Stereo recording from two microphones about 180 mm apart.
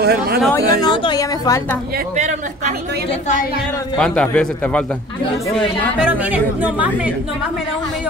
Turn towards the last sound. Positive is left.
turn(degrees=-10)  # may be behind; listen again after turning